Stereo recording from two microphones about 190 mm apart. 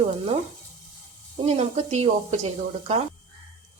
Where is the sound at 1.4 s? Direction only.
35° right (ahead or behind).